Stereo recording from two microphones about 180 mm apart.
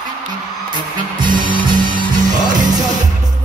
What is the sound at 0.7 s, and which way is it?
Music, 25° right (ahead or behind).